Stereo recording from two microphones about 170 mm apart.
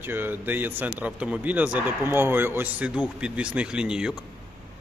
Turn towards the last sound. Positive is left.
turn(degrees=-5)  # may be behind; listen again after turning